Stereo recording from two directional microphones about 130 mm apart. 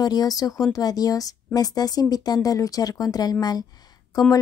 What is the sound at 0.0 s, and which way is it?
Speech, 30° left (ahead or behind).